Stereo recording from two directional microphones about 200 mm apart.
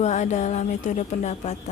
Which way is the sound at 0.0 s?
35° left (ahead or behind).